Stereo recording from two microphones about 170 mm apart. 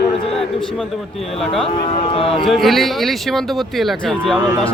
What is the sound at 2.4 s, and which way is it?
Speech, centre (ahead or behind).